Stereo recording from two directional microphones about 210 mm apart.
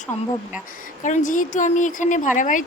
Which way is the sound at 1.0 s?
35° left (ahead or behind).